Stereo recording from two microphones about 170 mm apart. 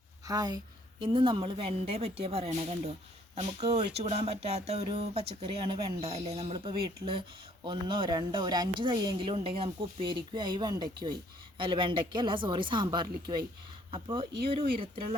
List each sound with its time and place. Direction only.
0.3 s a woman's voice: 20° right (ahead or behind)